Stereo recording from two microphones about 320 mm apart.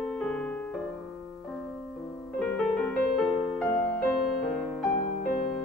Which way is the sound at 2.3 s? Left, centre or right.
Centre.